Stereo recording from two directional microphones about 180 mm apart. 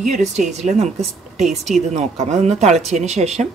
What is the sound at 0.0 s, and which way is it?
Speech, 40° right (ahead or behind).